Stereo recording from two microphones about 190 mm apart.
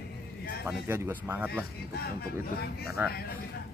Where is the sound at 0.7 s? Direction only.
10° right (ahead or behind).